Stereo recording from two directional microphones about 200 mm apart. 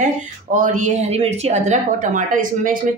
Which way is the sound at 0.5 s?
40° right (ahead or behind).